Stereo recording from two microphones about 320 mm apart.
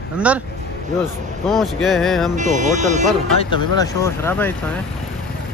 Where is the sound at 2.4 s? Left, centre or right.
Right.